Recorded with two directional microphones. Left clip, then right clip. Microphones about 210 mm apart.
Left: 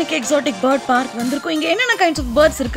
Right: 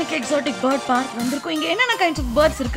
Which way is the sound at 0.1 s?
20° left (ahead or behind).